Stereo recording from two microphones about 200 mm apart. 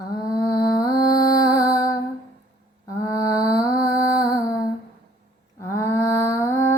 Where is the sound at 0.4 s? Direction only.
20° left (ahead or behind).